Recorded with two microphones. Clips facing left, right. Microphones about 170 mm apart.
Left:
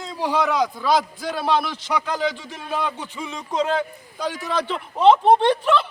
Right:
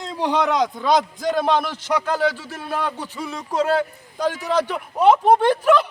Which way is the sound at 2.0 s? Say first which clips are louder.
Right 3 dB; 15° left (ahead or behind).